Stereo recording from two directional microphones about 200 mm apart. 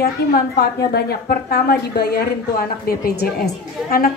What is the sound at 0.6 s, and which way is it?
A woman's voice, 50° left (ahead or behind).